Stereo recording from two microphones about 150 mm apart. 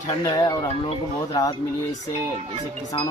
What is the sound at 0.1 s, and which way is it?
Speech, 25° left (ahead or behind).